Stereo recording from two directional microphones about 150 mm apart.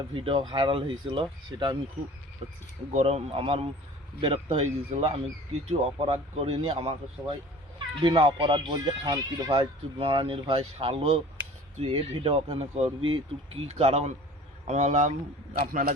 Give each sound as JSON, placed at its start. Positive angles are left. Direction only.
{"t": 0.1, "sound": "speech", "side_deg": -35}
{"t": 2.9, "sound": "speech", "side_deg": -45}
{"t": 7.2, "sound": "speech", "side_deg": -10}
{"t": 8.0, "sound": "a man's voice", "side_deg": -35}